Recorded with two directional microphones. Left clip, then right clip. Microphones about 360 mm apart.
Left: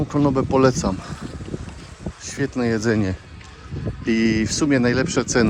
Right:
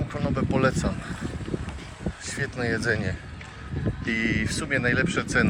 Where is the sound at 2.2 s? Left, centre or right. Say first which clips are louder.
Left 6 dB; centre.